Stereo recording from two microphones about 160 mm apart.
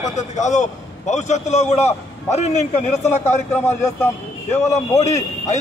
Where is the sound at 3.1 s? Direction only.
15° left (ahead or behind).